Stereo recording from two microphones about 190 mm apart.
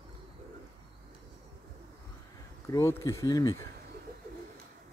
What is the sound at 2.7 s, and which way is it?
Speech, 15° left (ahead or behind).